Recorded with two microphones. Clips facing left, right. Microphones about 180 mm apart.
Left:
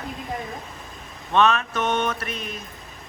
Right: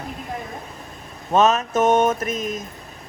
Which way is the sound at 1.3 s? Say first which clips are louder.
Right 3 dB; 40° right (ahead or behind).